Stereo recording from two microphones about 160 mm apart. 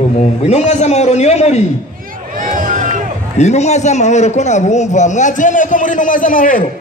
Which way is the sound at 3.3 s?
45° left (ahead or behind).